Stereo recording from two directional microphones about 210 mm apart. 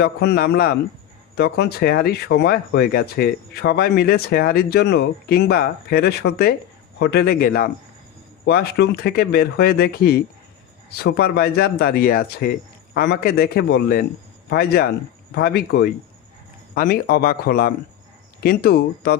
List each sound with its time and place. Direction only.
0.0 s speech: 50° left (ahead or behind)